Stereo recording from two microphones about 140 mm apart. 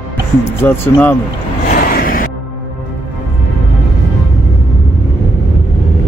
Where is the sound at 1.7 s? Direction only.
90° left.